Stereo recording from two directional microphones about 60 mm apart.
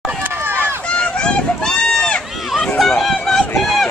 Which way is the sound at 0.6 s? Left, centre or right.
Centre.